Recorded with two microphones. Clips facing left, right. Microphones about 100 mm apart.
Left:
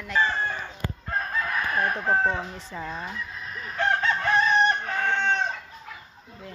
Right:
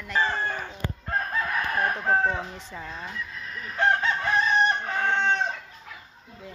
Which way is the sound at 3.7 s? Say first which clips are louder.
Right 1 dB; 20° right (ahead or behind).